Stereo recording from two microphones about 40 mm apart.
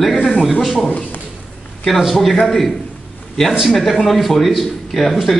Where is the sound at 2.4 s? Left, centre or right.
Centre.